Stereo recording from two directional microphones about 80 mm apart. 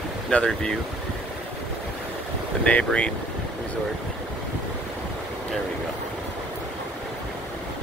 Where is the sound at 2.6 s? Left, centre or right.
Centre.